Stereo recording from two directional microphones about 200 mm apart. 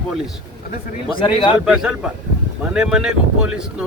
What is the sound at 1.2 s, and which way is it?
Speech, 25° left (ahead or behind).